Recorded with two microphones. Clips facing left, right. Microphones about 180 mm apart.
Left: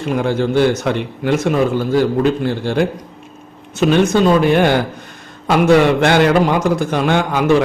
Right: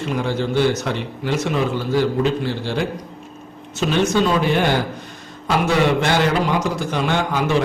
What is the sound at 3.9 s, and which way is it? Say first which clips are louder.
Speech: left 5 dB; 50° left (ahead or behind).